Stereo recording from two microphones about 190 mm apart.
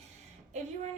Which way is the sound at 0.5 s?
35° right (ahead or behind).